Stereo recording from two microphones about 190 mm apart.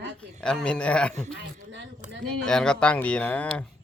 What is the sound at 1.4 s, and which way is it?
Speech, 70° right (ahead or behind).